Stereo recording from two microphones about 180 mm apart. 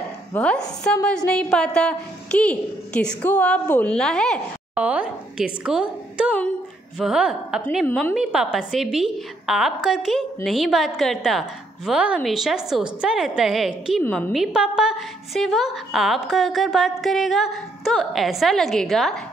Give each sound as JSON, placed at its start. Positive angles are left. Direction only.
{"t": 0.3, "sound": "a woman's voice", "side_deg": 5}
{"t": 4.7, "sound": "a woman's voice", "side_deg": -5}